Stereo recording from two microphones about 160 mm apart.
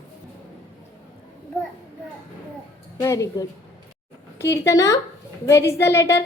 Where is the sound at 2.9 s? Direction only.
20° left (ahead or behind).